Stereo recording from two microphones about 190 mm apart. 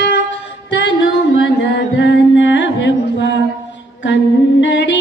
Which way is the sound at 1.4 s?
65° left (ahead or behind).